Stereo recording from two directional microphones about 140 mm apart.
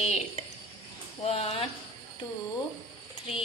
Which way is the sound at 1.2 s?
45° left (ahead or behind).